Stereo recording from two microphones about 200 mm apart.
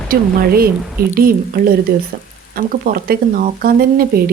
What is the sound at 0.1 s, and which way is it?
Speech, 50° right (ahead or behind).